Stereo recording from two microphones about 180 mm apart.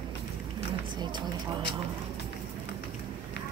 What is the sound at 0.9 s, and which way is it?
Speech, 25° right (ahead or behind).